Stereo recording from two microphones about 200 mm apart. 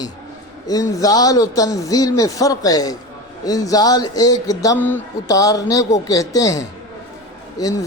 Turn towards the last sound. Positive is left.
turn(degrees=15)  # may be behind; listen again after turning